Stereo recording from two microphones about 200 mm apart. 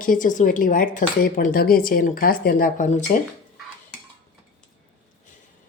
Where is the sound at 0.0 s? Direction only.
40° left (ahead or behind).